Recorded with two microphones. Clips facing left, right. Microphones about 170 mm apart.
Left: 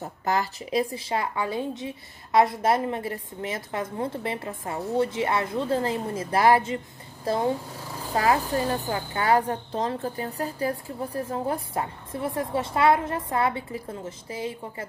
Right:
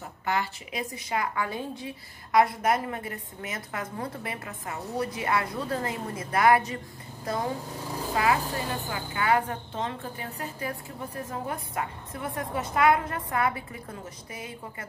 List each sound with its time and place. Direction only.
0.0 s a woman's voice: 40° left (ahead or behind)
8.1 s a woman's voice: 40° left (ahead or behind)